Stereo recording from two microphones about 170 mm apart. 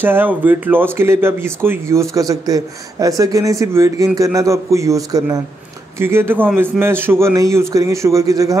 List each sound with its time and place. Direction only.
0.0 s speech: 10° right (ahead or behind)